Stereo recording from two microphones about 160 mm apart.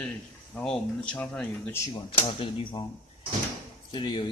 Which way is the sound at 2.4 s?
30° left (ahead or behind).